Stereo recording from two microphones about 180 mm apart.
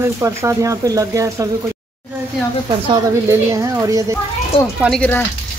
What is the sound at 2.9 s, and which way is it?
Speech, 15° right (ahead or behind).